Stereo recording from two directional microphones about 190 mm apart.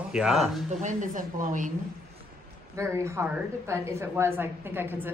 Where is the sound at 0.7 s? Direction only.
40° right (ahead or behind).